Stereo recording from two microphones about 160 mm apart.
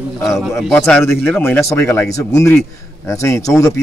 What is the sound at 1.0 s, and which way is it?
A man's voice, 15° left (ahead or behind).